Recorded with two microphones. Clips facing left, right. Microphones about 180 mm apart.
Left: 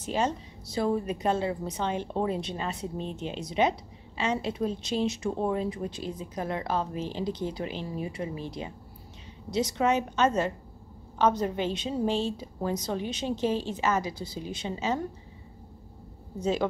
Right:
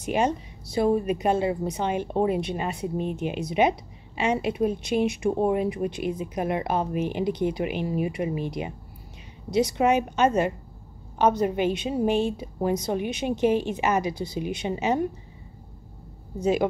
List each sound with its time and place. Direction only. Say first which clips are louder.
0.0 s a woman's voice: right 4 dB; 15° right (ahead or behind)
16.3 s a woman's voice: right 5 dB; 10° right (ahead or behind)